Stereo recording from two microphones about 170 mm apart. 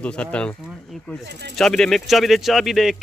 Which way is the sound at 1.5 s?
5° left (ahead or behind).